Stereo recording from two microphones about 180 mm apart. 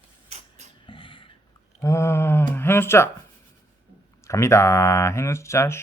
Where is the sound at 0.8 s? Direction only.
30° left (ahead or behind).